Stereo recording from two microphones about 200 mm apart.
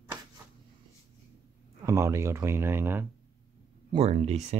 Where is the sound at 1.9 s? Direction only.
15° right (ahead or behind).